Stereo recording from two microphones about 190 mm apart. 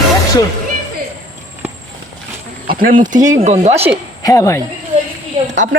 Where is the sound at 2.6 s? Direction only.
50° right (ahead or behind).